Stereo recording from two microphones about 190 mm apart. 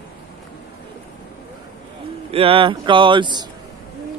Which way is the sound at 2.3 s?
30° right (ahead or behind).